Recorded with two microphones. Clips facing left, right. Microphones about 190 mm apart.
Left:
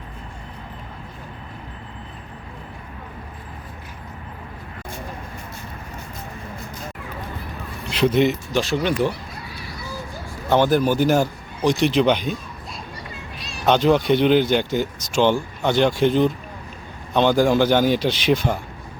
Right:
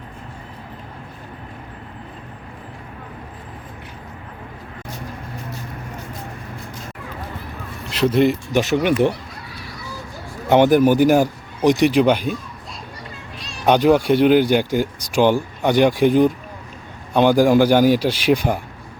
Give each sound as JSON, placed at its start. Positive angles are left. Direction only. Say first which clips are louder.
{"t": 7.9, "sound": "speech", "louder": "right 2 dB", "side_deg": 0}
{"t": 8.5, "sound": "speech", "louder": "right 4 dB", "side_deg": -15}
{"t": 10.5, "sound": "speech", "louder": "right 4 dB", "side_deg": -15}
{"t": 13.7, "sound": "speech", "louder": "right 2 dB", "side_deg": -10}